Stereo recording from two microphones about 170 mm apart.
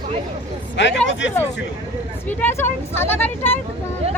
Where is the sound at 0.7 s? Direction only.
90° left.